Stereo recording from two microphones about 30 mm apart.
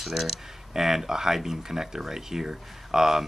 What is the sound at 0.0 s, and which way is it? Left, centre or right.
Speech, centre.